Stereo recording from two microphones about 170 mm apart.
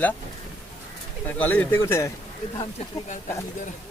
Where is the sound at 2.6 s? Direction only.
40° left (ahead or behind).